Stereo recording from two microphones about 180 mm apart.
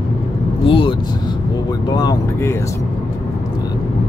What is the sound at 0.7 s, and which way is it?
Speech, 30° left (ahead or behind).